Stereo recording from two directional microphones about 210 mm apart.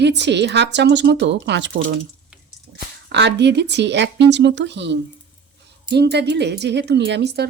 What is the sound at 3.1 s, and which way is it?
A woman's voice, 55° right (ahead or behind).